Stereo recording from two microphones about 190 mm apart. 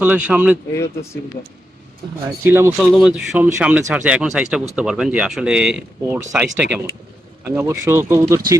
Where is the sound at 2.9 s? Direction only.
Centre (ahead or behind).